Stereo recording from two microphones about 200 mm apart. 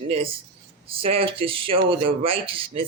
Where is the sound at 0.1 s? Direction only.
30° right (ahead or behind).